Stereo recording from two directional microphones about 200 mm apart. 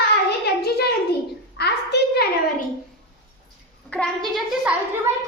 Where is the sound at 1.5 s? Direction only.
55° left (ahead or behind).